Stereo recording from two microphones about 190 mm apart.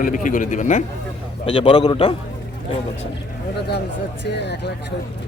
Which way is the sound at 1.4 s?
30° left (ahead or behind).